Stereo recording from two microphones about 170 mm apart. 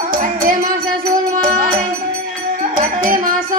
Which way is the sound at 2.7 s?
55° right (ahead or behind).